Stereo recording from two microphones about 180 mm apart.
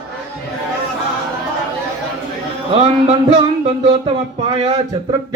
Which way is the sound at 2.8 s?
30° right (ahead or behind).